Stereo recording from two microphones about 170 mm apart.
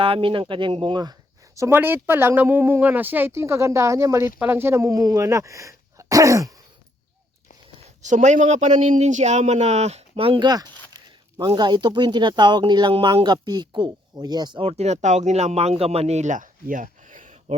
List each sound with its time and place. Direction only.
0.0 s speech: 30° right (ahead or behind)
1.5 s speech: 15° right (ahead or behind)
7.8 s speech: 45° right (ahead or behind)